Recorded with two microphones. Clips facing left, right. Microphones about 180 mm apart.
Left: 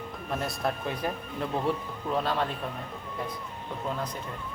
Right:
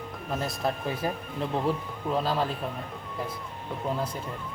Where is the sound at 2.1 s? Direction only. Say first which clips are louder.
Right 1 dB; 5° right (ahead or behind).